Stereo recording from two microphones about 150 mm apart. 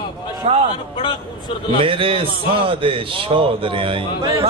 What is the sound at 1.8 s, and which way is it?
A man's voice, 35° right (ahead or behind).